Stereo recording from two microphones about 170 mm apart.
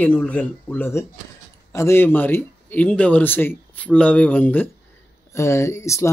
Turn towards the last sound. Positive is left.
turn(degrees=15)  # may be behind; listen again after turning